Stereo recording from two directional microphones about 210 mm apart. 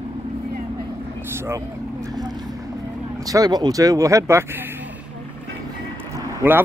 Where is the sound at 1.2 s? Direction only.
10° right (ahead or behind).